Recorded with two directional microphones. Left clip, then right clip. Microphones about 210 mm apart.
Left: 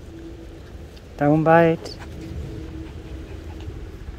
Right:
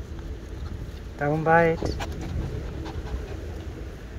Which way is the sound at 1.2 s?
45° left (ahead or behind).